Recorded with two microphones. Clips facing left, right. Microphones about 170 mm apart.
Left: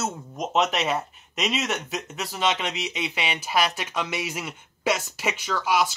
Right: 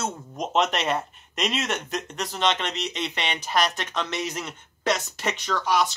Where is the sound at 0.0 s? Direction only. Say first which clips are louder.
Even; centre (ahead or behind).